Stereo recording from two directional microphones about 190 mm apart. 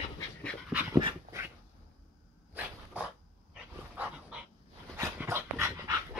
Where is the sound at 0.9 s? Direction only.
20° right (ahead or behind).